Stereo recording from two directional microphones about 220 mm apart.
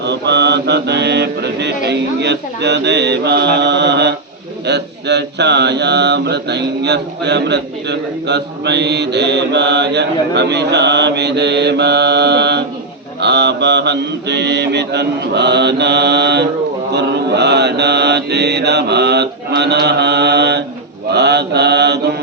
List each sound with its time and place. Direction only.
0.0 s mantra: 50° right (ahead or behind)